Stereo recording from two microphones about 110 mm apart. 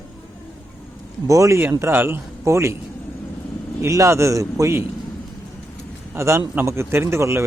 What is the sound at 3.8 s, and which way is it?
A man's voice, 25° right (ahead or behind).